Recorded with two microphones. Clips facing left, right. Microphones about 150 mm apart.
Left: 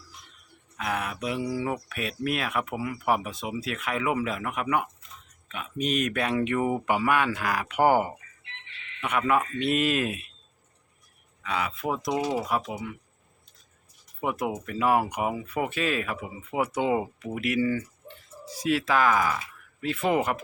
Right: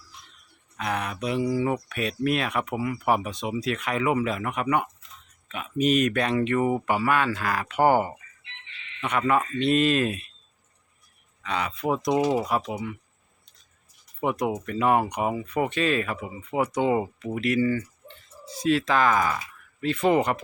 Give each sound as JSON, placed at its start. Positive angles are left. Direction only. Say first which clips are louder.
{"t": 0.8, "sound": "speech", "louder": "right 1 dB", "side_deg": 5}
{"t": 11.4, "sound": "speech", "louder": "right 2 dB", "side_deg": 5}
{"t": 14.2, "sound": "speech", "louder": "right 3 dB", "side_deg": 5}